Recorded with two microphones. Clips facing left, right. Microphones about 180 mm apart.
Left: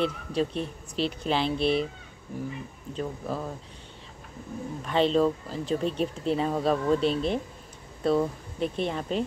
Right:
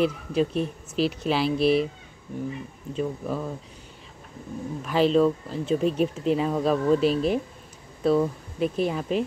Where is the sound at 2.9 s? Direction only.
Centre (ahead or behind).